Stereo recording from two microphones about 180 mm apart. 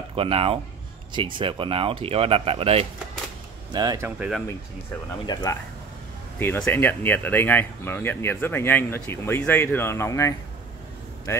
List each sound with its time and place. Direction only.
0.1 s speech: 30° right (ahead or behind)
3.7 s speech: 20° right (ahead or behind)
5.2 s speech: 20° left (ahead or behind)